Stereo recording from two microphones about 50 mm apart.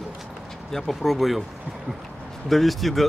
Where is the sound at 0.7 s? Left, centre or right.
Centre.